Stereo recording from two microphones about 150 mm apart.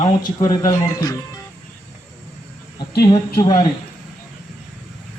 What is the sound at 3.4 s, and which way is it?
Speech, 30° left (ahead or behind).